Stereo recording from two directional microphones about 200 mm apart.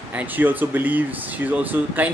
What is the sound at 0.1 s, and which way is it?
Speech, 10° right (ahead or behind).